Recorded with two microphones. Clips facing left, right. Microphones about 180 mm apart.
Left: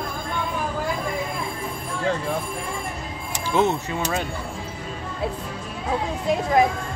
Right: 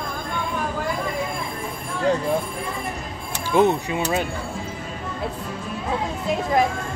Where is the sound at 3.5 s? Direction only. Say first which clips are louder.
Right 3 dB; 15° right (ahead or behind).